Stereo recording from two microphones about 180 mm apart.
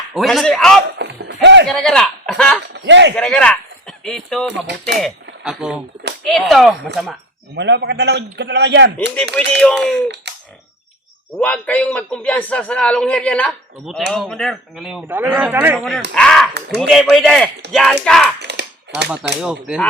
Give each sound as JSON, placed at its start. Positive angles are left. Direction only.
{"t": 0.1, "sound": "a man's voice", "side_deg": 0}
{"t": 0.9, "sound": "music", "side_deg": -80}
{"t": 1.6, "sound": "speech", "side_deg": 5}
{"t": 2.7, "sound": "a man's voice", "side_deg": -75}
{"t": 3.2, "sound": "a man's voice", "side_deg": 5}
{"t": 7.5, "sound": "a man's voice", "side_deg": -75}
{"t": 9.3, "sound": "a man's voice", "side_deg": 5}
{"t": 10.3, "sound": "a sound", "side_deg": -70}
{"t": 11.3, "sound": "a man's voice", "side_deg": 10}
{"t": 15.0, "sound": "speech", "side_deg": -10}
{"t": 16.1, "sound": "a man's voice", "side_deg": 5}
{"t": 18.4, "sound": "a sound", "side_deg": -70}
{"t": 19.4, "sound": "a man's voice", "side_deg": -5}